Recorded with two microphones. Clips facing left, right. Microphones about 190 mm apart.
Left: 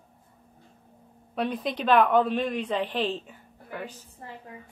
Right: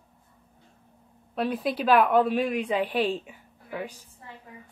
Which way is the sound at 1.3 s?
5° right (ahead or behind).